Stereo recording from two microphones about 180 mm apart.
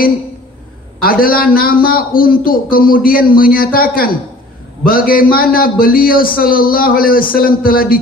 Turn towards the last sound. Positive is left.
turn(degrees=55)  # may be behind; listen again after turning